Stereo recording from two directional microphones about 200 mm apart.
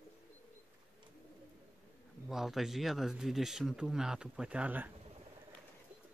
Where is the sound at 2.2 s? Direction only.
Centre (ahead or behind).